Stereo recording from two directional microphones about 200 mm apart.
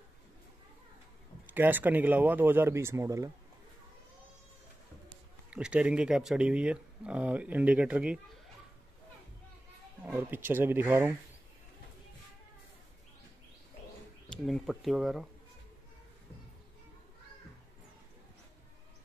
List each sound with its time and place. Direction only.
1.5 s speech: 10° right (ahead or behind)
5.5 s speech: 5° right (ahead or behind)
10.0 s speech: 10° right (ahead or behind)
14.3 s speech: centre (ahead or behind)